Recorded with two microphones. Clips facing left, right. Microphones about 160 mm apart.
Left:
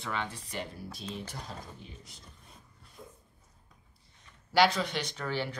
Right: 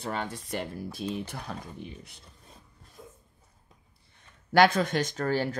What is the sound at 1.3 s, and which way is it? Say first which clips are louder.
Speech: right 5 dB; 65° right (ahead or behind).